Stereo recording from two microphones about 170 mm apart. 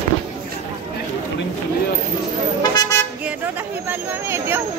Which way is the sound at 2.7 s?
20° left (ahead or behind).